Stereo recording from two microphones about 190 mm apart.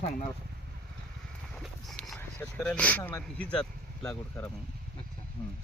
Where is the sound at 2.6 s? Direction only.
5° left (ahead or behind).